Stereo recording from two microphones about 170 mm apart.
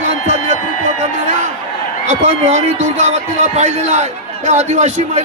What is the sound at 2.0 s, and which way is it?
Speech, 45° right (ahead or behind).